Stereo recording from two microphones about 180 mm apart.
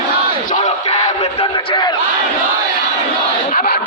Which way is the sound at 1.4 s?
25° left (ahead or behind).